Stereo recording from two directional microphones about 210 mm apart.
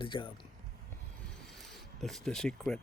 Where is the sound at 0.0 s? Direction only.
25° left (ahead or behind).